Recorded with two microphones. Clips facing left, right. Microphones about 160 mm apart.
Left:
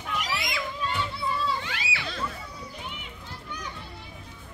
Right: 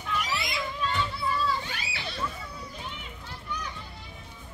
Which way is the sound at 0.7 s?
15° left (ahead or behind).